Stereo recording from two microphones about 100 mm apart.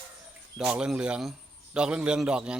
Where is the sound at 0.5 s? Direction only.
10° right (ahead or behind).